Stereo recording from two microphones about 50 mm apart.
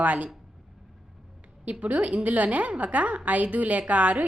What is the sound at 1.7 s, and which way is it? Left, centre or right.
A woman's voice, right.